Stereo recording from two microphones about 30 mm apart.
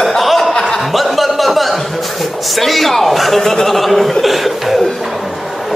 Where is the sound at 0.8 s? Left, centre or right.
Centre.